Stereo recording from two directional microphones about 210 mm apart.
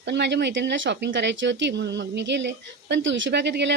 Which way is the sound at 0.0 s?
55° right (ahead or behind).